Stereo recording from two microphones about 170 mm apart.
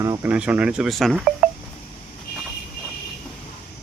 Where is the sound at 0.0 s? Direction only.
15° right (ahead or behind).